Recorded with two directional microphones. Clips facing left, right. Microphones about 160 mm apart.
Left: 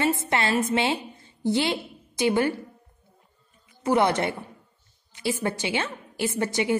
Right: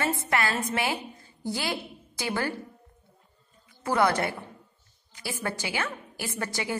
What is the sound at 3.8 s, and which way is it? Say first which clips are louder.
A woman's voice: left 3 dB; 20° left (ahead or behind).